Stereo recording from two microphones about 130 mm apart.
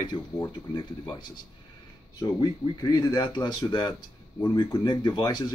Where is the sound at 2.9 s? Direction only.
30° left (ahead or behind).